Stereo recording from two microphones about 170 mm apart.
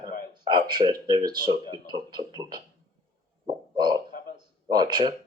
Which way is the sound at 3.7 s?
25° right (ahead or behind).